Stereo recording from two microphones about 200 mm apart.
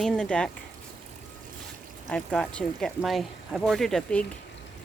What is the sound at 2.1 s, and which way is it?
Speech, 5° left (ahead or behind).